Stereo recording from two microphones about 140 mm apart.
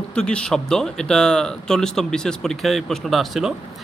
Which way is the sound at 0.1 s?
5° left (ahead or behind).